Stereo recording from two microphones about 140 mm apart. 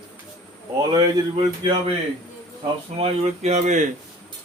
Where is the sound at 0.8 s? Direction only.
25° right (ahead or behind).